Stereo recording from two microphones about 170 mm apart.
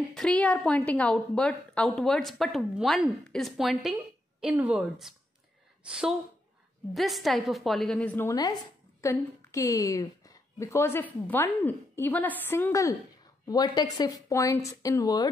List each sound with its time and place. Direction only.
0.1 s a woman's voice: 5° left (ahead or behind); by 15.2 s 20° left (ahead or behind)